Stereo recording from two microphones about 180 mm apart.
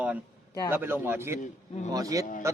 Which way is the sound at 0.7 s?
10° right (ahead or behind).